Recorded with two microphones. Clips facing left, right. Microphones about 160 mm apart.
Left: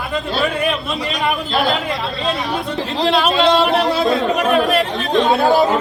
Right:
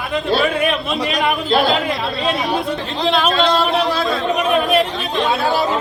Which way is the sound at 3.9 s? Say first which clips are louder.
Left 3 dB; 20° left (ahead or behind).